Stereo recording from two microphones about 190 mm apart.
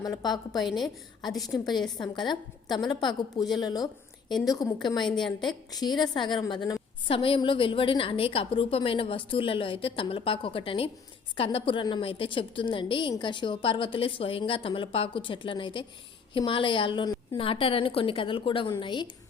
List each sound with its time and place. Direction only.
0.0 s a woman's voice: 20° left (ahead or behind)
0.6 s a woman's voice: centre (ahead or behind)
2.0 s a woman's voice: 25° left (ahead or behind)